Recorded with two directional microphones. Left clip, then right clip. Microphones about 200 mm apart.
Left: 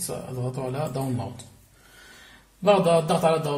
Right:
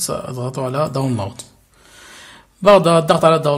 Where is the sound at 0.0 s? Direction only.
50° right (ahead or behind).